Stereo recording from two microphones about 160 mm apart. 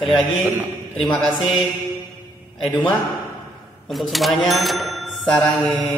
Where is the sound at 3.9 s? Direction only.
Centre (ahead or behind).